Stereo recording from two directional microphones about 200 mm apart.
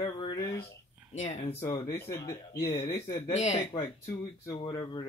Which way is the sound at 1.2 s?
35° left (ahead or behind).